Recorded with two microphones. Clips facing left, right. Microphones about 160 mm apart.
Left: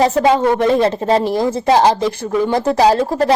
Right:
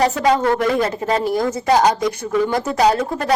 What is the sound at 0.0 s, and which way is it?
A woman's voice, 25° left (ahead or behind).